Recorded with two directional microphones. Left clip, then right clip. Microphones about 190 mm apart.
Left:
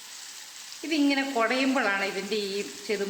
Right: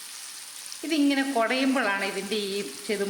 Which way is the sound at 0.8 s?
15° right (ahead or behind).